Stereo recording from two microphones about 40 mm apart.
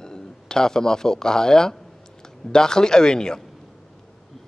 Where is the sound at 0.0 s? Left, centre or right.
Centre.